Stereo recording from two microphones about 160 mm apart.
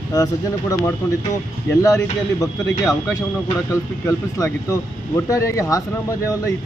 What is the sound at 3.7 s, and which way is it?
Speech, 20° left (ahead or behind).